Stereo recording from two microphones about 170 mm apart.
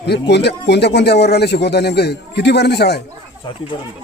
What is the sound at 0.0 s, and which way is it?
Speech, 85° left.